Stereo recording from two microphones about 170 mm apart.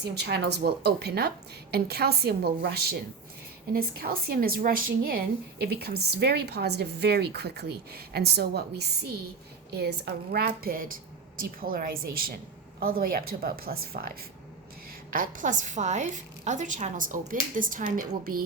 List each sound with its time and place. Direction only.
0.0 s a woman's voice: 70° right (ahead or behind)
15.1 s a woman's voice: 50° right (ahead or behind)